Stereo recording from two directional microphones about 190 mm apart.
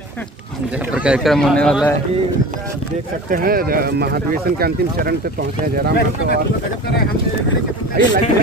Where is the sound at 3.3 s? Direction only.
50° right (ahead or behind).